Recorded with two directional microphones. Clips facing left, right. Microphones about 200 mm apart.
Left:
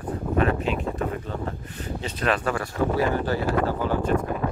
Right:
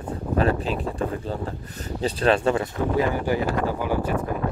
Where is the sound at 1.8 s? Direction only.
35° right (ahead or behind).